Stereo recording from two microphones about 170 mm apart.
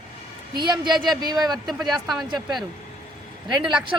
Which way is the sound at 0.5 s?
25° right (ahead or behind).